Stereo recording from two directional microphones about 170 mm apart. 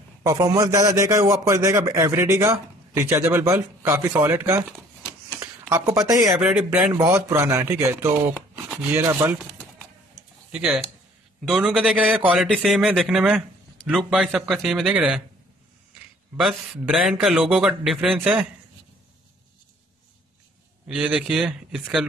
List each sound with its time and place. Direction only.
0.2 s a man's voice: 20° right (ahead or behind)
10.5 s a man's voice: 5° right (ahead or behind)
16.3 s a man's voice: centre (ahead or behind)
20.8 s a man's voice: 5° right (ahead or behind)